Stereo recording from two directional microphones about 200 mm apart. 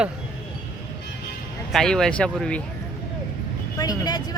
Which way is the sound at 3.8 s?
20° left (ahead or behind).